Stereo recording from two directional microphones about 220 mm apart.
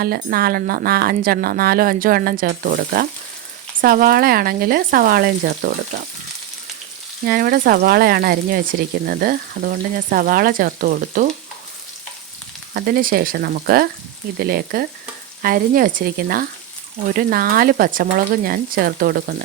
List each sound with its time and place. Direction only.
0.0 s speech: 45° right (ahead or behind)
7.3 s speech: 45° right (ahead or behind)
12.7 s speech: 40° right (ahead or behind)